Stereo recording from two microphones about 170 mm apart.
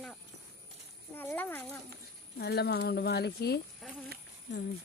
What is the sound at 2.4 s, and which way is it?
Speech, 75° left (ahead or behind).